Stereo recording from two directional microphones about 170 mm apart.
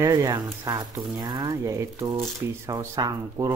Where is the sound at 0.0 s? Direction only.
20° right (ahead or behind).